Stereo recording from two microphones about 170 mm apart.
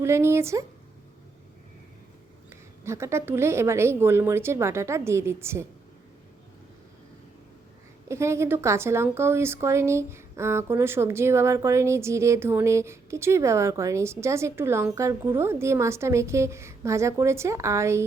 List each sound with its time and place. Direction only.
0.0 s speech: 15° right (ahead or behind)
2.8 s speech: 15° right (ahead or behind)
8.0 s speech: 15° right (ahead or behind)